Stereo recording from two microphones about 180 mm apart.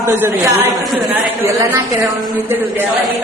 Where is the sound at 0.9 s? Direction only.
Centre (ahead or behind).